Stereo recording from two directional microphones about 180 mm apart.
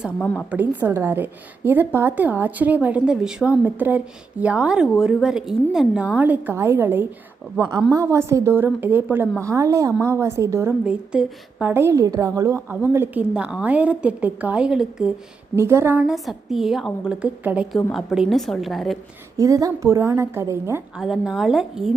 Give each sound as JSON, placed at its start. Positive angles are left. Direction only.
{"t": 0.5, "sound": "a woman's voice", "side_deg": -10}
{"t": 15.5, "sound": "a woman's voice", "side_deg": -15}
{"t": 19.4, "sound": "a woman's voice", "side_deg": -20}
{"t": 20.9, "sound": "a woman's voice", "side_deg": -5}